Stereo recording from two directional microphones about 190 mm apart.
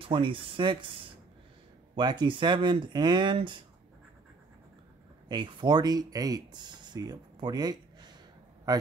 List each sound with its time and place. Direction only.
0.0 s speech: 25° right (ahead or behind)
2.0 s speech: 25° right (ahead or behind)
5.3 s speech: 25° right (ahead or behind)